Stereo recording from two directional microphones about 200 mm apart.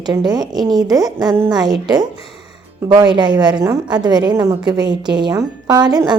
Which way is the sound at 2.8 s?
20° right (ahead or behind).